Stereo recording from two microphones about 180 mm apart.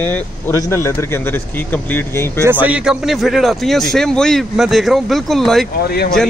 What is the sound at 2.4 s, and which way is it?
A man's voice, 10° right (ahead or behind).